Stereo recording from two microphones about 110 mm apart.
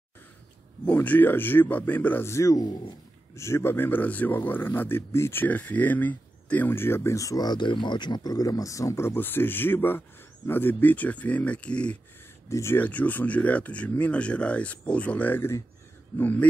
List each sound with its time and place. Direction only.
0.8 s speech: 15° left (ahead or behind); by 2.8 s 35° left (ahead or behind)
3.3 s speech: 25° left (ahead or behind)
12.4 s speech: 25° left (ahead or behind)